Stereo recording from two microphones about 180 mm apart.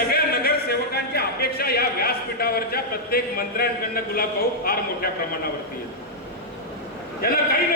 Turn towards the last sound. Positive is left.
turn(degrees=55)  # may be behind; listen again after turning